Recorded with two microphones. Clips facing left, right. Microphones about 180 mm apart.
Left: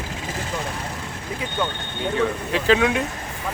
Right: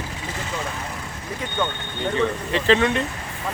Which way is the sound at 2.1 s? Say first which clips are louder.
Even; 5° left (ahead or behind).